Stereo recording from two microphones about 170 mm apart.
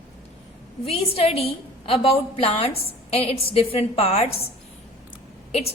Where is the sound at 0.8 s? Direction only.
35° left (ahead or behind).